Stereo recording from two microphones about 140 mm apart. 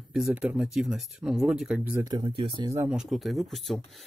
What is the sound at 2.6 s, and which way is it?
Speech, 25° right (ahead or behind).